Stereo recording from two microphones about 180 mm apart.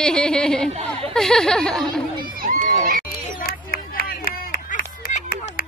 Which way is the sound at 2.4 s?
50° right (ahead or behind).